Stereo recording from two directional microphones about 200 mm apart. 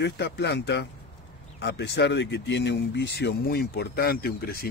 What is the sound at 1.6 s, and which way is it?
Speech, 60° left (ahead or behind).